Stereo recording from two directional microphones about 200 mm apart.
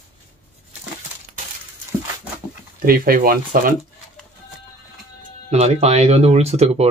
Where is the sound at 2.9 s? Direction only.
45° right (ahead or behind).